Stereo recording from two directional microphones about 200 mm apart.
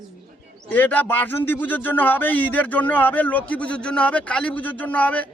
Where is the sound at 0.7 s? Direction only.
10° left (ahead or behind).